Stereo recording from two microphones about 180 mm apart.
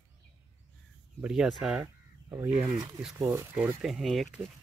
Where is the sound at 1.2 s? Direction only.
5° right (ahead or behind).